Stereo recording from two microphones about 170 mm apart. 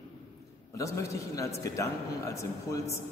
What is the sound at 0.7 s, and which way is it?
A man's voice, 20° left (ahead or behind).